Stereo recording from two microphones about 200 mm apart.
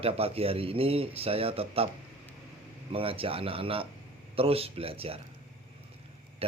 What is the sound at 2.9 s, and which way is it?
Speech, 25° right (ahead or behind).